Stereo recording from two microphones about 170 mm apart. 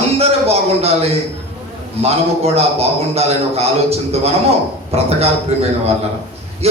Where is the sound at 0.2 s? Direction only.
35° right (ahead or behind).